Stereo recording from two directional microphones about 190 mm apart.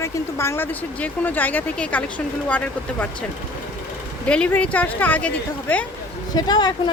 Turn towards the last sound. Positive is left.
turn(degrees=25)  # may be behind; listen again after turning